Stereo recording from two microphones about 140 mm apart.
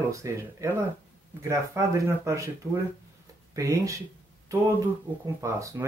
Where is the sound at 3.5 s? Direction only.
20° right (ahead or behind).